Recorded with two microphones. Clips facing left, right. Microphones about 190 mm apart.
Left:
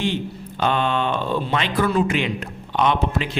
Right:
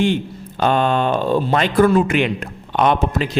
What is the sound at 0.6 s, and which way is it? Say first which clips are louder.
Speech: right 4 dB; 45° right (ahead or behind).